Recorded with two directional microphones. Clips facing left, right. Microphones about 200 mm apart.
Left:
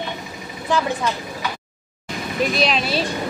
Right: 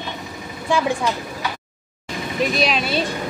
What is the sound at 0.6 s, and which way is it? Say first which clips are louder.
Speech: right 1 dB; 15° right (ahead or behind).